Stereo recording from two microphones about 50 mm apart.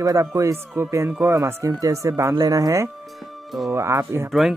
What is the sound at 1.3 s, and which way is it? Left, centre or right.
Speech, right.